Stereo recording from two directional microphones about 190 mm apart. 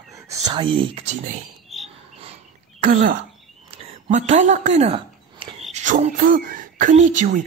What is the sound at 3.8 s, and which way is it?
Speech, 35° right (ahead or behind).